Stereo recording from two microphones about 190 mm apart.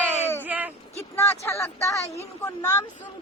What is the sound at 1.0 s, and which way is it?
Speech, 15° left (ahead or behind).